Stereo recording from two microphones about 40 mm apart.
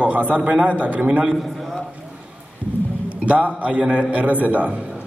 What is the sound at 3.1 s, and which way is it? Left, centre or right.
A man's voice, right.